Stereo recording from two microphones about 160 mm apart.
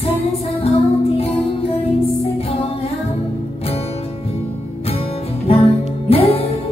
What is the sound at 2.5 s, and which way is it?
Music, 40° left (ahead or behind).